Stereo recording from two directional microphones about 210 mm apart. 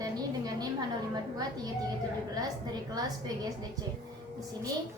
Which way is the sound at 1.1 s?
20° right (ahead or behind).